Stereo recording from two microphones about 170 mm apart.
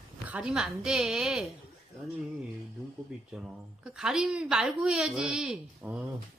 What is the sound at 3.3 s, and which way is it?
A woman's voice, 5° right (ahead or behind).